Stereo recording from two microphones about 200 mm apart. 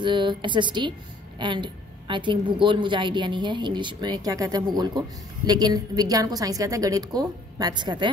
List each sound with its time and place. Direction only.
0.0 s a woman's voice: 25° right (ahead or behind)